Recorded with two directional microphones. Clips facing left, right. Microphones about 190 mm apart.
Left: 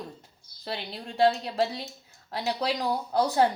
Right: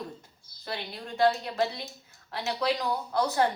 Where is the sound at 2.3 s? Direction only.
35° left (ahead or behind).